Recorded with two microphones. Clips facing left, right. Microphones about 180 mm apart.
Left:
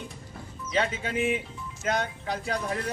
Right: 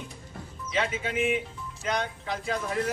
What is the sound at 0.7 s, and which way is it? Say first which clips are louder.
Speech: left 1 dB; 35° left (ahead or behind).